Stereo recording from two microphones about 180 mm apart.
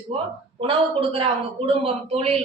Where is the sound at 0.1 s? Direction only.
35° right (ahead or behind).